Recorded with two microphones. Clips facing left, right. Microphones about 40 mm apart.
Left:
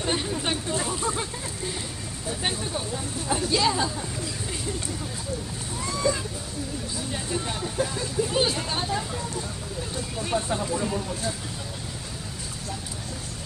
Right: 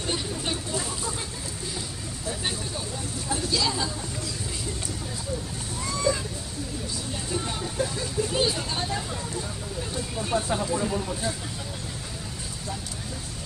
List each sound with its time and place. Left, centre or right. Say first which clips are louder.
0.0 s vehicle: left 3 dB; left
0.5 s a sound: left 2 dB; left
3.3 s speech: left 3 dB; left
5.9 s a sound: even; centre
7.7 s speech: left 2 dB; centre
10.3 s speech: right 1 dB; centre